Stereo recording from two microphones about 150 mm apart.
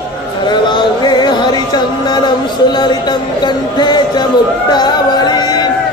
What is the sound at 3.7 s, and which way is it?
Music, 30° left (ahead or behind).